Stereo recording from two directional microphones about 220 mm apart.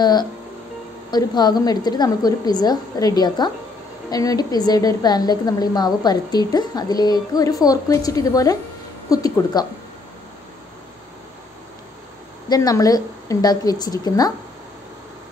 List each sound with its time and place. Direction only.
0.0 s a woman's voice: 20° left (ahead or behind)
12.4 s a woman's voice: 15° left (ahead or behind)